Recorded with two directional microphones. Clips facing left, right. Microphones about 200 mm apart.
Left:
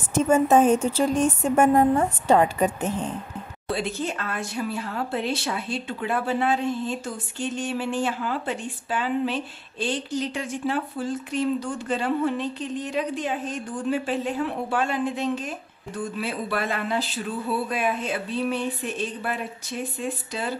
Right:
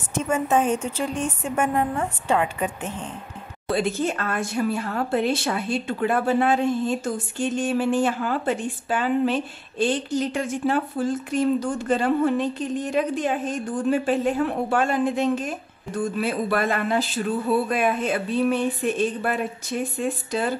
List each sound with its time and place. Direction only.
0.1 s a woman's voice: 40° left (ahead or behind)
3.6 s speech: 50° right (ahead or behind)